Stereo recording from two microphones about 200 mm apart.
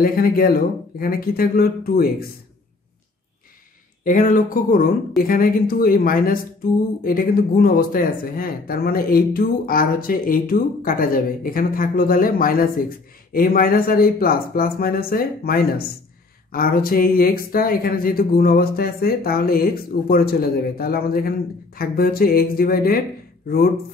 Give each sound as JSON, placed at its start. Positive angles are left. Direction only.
{"t": 0.0, "sound": "speech", "side_deg": 45}
{"t": 4.0, "sound": "speech", "side_deg": 40}